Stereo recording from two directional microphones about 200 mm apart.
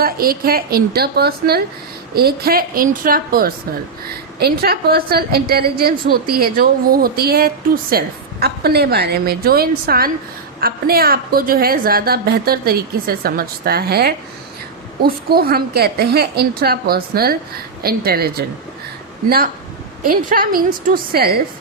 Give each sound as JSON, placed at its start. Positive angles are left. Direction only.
{"t": 0.0, "sound": "a woman's voice", "side_deg": -50}
{"t": 20.1, "sound": "a woman's voice", "side_deg": -45}